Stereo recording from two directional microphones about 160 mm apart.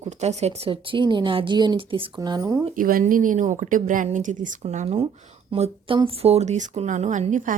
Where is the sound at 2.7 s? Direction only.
60° right (ahead or behind).